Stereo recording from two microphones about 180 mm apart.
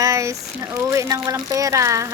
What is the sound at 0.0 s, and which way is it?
Speech, 15° right (ahead or behind).